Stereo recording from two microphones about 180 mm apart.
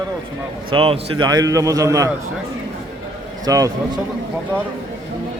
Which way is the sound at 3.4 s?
20° right (ahead or behind).